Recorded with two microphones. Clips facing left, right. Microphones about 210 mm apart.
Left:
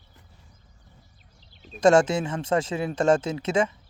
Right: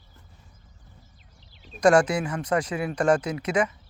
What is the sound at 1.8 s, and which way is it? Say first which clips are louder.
Speech: left 1 dB; 25° left (ahead or behind).